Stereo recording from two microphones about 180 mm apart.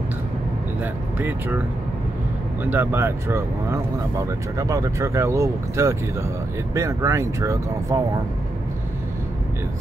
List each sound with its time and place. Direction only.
1.1 s speech: 10° right (ahead or behind)
2.6 s speech: 10° right (ahead or behind)